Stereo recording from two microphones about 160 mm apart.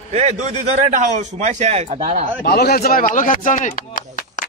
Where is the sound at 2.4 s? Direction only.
80° left.